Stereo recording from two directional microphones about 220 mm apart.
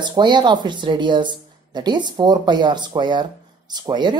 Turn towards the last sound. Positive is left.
turn(degrees=-20)  # may be behind; listen again after turning